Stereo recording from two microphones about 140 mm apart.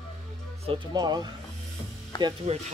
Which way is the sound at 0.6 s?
30° right (ahead or behind).